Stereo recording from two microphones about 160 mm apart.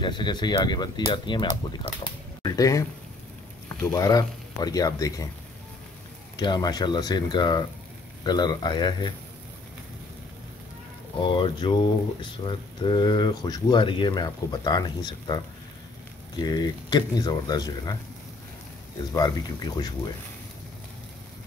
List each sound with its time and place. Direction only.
0.0 s speech: 30° left (ahead or behind)
2.0 s typewriter: 25° left (ahead or behind)
3.6 s speech: 20° left (ahead or behind)
6.3 s speech: 25° left (ahead or behind)
11.1 s speech: 30° left (ahead or behind)
19.1 s speech: 25° left (ahead or behind)